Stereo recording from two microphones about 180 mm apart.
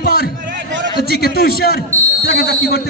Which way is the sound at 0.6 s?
85° right.